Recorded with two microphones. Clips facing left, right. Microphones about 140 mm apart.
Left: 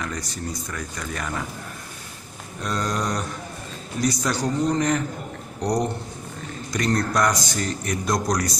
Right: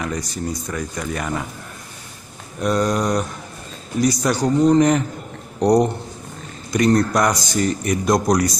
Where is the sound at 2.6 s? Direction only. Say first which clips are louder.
Right 7 dB; 15° right (ahead or behind).